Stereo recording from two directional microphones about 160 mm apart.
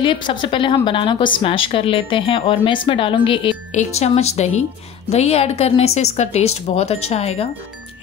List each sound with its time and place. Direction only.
0.0 s a woman's voice: 30° left (ahead or behind)